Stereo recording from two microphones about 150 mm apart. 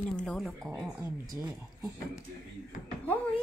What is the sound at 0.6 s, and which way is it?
Speech, 20° right (ahead or behind).